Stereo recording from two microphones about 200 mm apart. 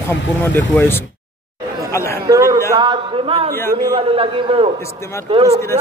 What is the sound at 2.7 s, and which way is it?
A man's voice, 20° right (ahead or behind).